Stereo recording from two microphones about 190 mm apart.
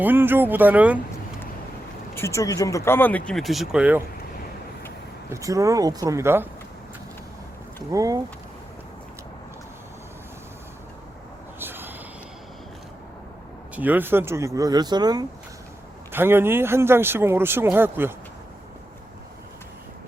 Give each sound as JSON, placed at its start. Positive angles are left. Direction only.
{"t": 0.0, "sound": "speech", "side_deg": -10}
{"t": 2.1, "sound": "speech", "side_deg": 15}
{"t": 5.3, "sound": "speech", "side_deg": -15}
{"t": 7.9, "sound": "speech", "side_deg": -20}
{"t": 11.6, "sound": "a sound", "side_deg": -10}
{"t": 13.7, "sound": "speech", "side_deg": -10}